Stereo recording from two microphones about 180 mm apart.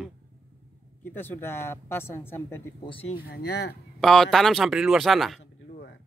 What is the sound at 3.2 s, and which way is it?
Speech, 65° left (ahead or behind).